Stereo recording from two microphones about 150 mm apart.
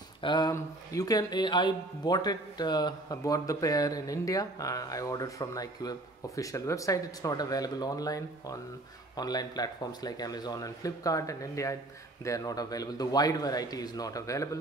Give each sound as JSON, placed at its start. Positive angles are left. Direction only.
{"t": 0.2, "sound": "a man's voice", "side_deg": 30}